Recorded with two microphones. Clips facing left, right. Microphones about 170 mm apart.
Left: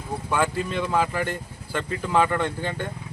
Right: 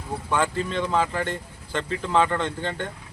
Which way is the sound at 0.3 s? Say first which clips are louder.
Even; 10° left (ahead or behind).